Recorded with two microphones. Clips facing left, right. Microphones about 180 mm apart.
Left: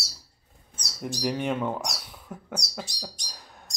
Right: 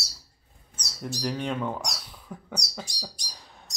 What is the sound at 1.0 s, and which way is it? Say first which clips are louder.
Speech: left 2 dB; 10° left (ahead or behind).